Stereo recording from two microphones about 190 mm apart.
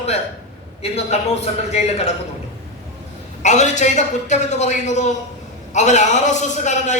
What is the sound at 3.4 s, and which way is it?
A man's voice, 40° left (ahead or behind).